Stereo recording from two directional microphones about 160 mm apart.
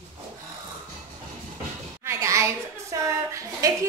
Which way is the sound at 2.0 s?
20° right (ahead or behind).